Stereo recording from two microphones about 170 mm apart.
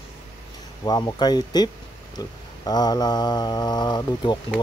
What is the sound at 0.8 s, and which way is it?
Speech, 20° left (ahead or behind).